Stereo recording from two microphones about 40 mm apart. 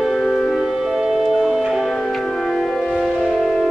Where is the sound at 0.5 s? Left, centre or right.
Centre.